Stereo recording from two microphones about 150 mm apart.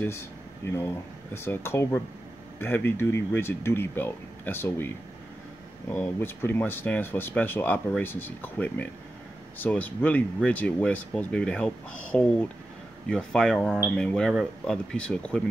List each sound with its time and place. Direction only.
0.7 s speech: 15° left (ahead or behind)